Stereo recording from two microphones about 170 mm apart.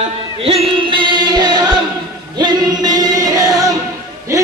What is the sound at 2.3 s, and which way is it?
Music, 25° right (ahead or behind).